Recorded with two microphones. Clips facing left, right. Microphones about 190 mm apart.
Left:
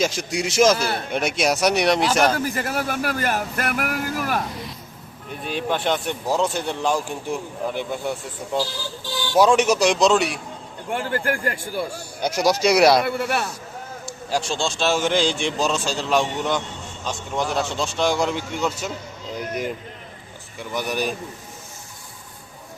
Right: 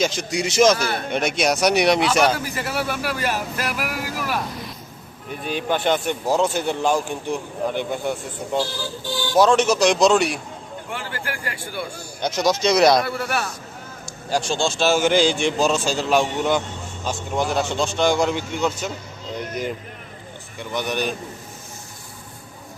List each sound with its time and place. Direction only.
0.0 s speech: 5° left (ahead or behind)
2.4 s speech: 45° left (ahead or behind)
5.4 s speech: centre (ahead or behind)
9.3 s a man's voice: 10° left (ahead or behind)
10.9 s speech: 50° left (ahead or behind)
12.2 s a man's voice: 10° left (ahead or behind)
13.1 s a man's voice: 25° left (ahead or behind)
14.3 s speech: centre (ahead or behind)